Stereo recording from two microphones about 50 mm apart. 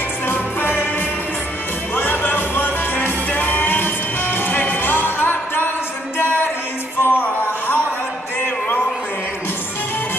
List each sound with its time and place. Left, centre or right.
0.3 s music: left
2.0 s music: left
7.0 s music: left